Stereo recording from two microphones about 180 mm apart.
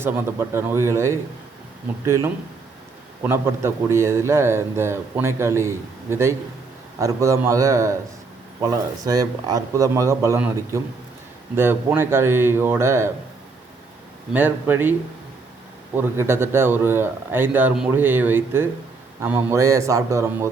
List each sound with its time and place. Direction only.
0.0 s a man's voice: 15° right (ahead or behind)
14.3 s a man's voice: 10° right (ahead or behind)
16.0 s a man's voice: 15° right (ahead or behind)